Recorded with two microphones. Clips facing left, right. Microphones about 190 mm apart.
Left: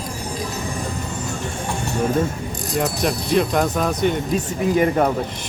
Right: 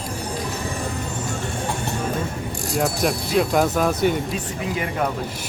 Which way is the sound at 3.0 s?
Centre (ahead or behind).